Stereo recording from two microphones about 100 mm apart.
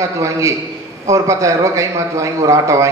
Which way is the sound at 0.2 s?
30° right (ahead or behind).